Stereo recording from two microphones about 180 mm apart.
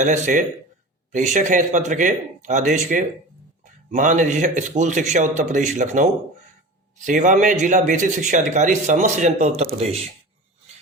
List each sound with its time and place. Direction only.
0.0 s speech: 45° right (ahead or behind)